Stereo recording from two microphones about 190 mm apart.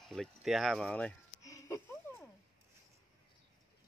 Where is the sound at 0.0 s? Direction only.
Centre (ahead or behind).